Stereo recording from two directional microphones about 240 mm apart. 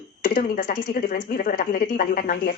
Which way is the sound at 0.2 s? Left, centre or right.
Left.